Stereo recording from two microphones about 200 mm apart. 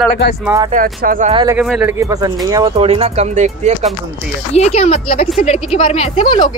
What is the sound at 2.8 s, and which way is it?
Speech, 30° right (ahead or behind).